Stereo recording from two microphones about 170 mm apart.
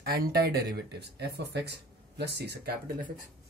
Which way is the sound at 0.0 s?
65° right (ahead or behind).